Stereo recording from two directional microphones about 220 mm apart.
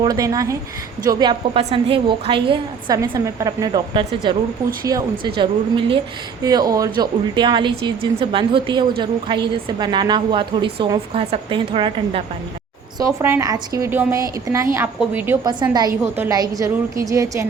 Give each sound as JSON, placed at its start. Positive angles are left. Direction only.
{"t": 0.0, "sound": "a woman's voice", "side_deg": -15}
{"t": 13.0, "sound": "a woman's voice", "side_deg": -15}